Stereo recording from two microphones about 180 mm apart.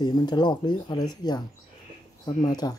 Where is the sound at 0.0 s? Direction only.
25° left (ahead or behind).